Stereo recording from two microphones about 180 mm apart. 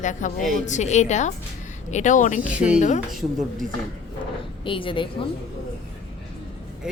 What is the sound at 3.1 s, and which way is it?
Speech, centre (ahead or behind).